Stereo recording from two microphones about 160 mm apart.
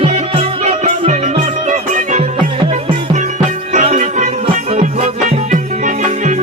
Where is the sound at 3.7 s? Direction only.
45° right (ahead or behind).